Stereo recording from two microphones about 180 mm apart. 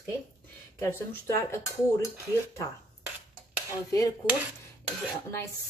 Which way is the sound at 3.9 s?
20° left (ahead or behind).